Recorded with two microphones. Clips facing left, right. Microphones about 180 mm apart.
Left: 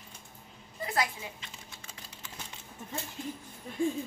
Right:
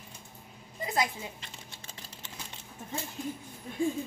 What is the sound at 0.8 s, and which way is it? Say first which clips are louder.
Speech: right 1 dB; 20° right (ahead or behind).